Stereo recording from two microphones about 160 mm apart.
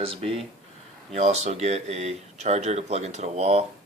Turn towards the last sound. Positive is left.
turn(degrees=-40)  # may be behind; listen again after turning